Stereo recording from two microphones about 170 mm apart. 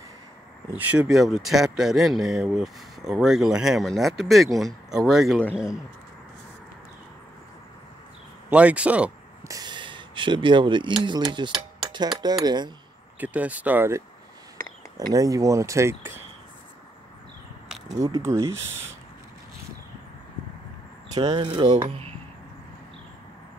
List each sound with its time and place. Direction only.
0.7 s speech: 10° right (ahead or behind)
5.4 s speech: 10° left (ahead or behind)
8.5 s speech: 5° right (ahead or behind)
9.5 s speech: 25° right (ahead or behind)
13.2 s speech: 10° right (ahead or behind)
15.1 s speech: 20° right (ahead or behind)
18.0 s speech: 20° right (ahead or behind)
21.1 s speech: 25° right (ahead or behind)